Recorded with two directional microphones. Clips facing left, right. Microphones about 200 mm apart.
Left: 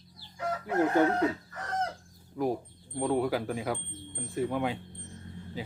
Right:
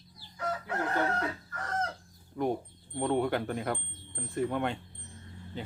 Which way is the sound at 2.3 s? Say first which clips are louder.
Left 1 dB; 5° left (ahead or behind).